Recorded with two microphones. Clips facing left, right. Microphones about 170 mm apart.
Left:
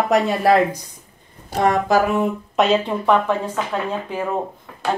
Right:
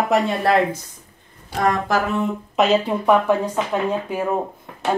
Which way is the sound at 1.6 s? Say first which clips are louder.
Left 3 dB; 15° left (ahead or behind).